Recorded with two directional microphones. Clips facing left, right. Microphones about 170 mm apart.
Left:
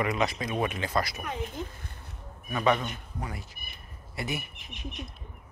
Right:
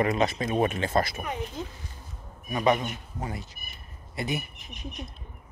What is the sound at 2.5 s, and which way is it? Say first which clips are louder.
A man's voice: right 2 dB; 20° right (ahead or behind).